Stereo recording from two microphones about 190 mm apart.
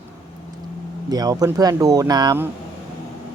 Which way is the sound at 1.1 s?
20° right (ahead or behind).